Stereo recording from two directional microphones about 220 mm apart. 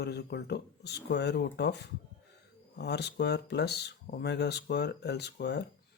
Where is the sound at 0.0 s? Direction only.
50° left (ahead or behind).